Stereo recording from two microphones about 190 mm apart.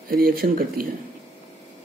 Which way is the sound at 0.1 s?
50° right (ahead or behind).